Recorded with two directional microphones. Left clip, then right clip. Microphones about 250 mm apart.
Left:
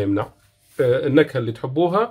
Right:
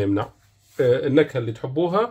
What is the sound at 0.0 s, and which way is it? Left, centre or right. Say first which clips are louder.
Speech: left 1 dB; centre.